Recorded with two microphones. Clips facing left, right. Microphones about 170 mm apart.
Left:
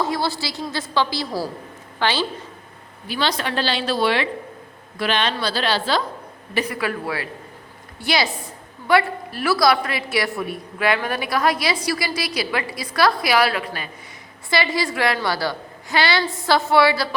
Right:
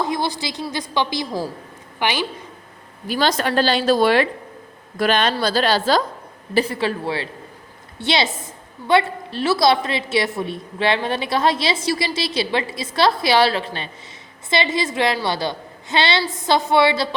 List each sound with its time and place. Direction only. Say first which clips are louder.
0.0 s a woman's voice: even; 20° right (ahead or behind)
3.1 s a woman's voice: right 4 dB; 45° right (ahead or behind)
6.5 s a woman's voice: right 4 dB; 30° right (ahead or behind)